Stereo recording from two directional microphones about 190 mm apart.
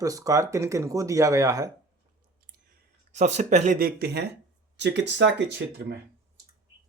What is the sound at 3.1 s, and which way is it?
Speech, 35° right (ahead or behind).